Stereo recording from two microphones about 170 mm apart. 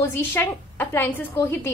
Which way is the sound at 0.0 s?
15° left (ahead or behind).